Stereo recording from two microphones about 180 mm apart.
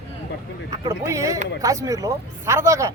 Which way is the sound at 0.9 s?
15° right (ahead or behind).